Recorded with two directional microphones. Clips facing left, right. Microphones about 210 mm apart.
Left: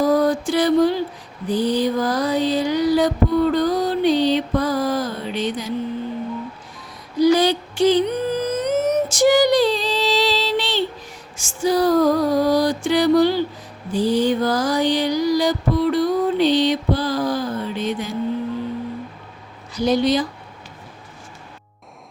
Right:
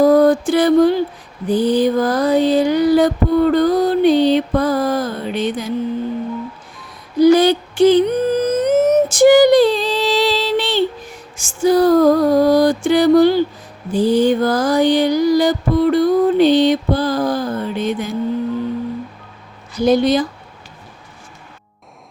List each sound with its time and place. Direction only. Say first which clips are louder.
0.0 s mantra: right 6 dB; 55° right (ahead or behind)
7.2 s a sound: right 5 dB; 55° right (ahead or behind)
11.3 s music: right 5 dB; 50° right (ahead or behind)
13.9 s mantra: right 4 dB; 50° right (ahead or behind)
19.7 s music: right 4 dB; 50° right (ahead or behind)